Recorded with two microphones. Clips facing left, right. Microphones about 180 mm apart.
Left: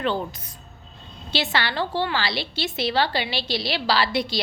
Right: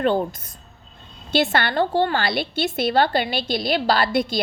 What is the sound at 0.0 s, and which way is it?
A woman's voice, 50° right (ahead or behind).